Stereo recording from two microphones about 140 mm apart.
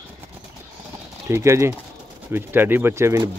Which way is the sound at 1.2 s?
20° right (ahead or behind).